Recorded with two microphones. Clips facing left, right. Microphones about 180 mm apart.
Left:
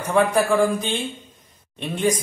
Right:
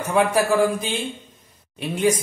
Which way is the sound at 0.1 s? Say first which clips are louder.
Left 1 dB; 5° right (ahead or behind).